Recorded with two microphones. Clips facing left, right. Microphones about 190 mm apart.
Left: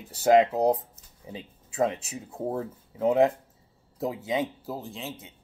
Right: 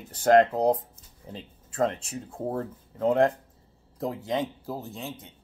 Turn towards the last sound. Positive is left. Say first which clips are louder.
# even
turn(degrees=5)  # may be behind; listen again after turning